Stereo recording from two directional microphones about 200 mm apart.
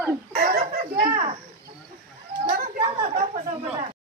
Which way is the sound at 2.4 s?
45° right (ahead or behind).